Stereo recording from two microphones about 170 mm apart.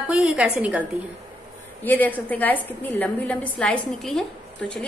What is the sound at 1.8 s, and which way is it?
A woman's voice, 10° left (ahead or behind).